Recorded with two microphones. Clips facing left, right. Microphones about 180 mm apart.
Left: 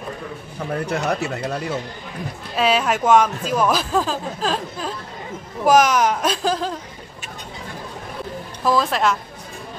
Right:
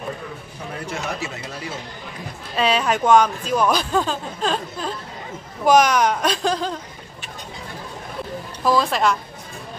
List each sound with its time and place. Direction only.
0.8 s speech: 60° left (ahead or behind)
2.5 s speech: 5° left (ahead or behind)
8.6 s speech: centre (ahead or behind)